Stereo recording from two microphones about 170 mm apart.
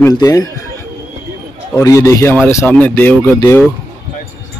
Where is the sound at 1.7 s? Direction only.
20° left (ahead or behind).